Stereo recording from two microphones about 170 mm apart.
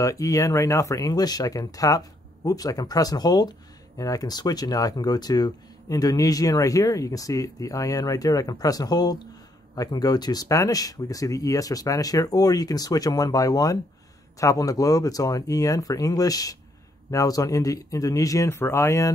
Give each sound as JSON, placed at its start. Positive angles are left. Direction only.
{"t": 0.0, "sound": "speech", "side_deg": 20}